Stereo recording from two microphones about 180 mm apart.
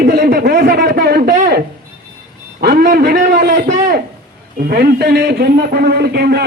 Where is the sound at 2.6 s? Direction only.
60° right (ahead or behind).